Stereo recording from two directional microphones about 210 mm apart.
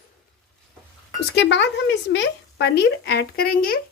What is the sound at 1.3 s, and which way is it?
Speech, 55° left (ahead or behind).